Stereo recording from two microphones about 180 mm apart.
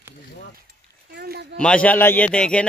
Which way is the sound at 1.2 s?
65° right (ahead or behind).